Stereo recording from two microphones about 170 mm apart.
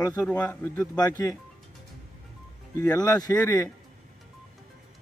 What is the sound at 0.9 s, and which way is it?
Speech, 25° left (ahead or behind).